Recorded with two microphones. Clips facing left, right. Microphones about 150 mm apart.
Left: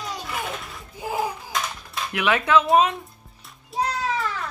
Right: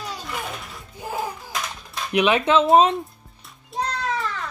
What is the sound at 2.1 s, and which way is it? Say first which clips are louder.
Speech: right 2 dB; 20° right (ahead or behind).